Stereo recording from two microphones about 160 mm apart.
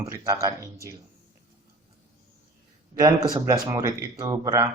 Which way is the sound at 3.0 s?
20° right (ahead or behind).